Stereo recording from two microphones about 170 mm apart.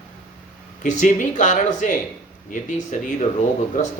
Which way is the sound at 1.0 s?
45° left (ahead or behind).